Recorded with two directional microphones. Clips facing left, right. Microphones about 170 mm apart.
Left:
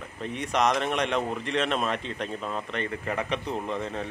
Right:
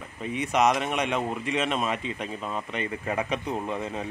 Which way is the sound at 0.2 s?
5° right (ahead or behind).